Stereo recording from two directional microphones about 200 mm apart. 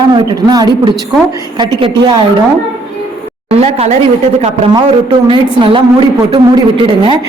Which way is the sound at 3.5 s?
30° right (ahead or behind).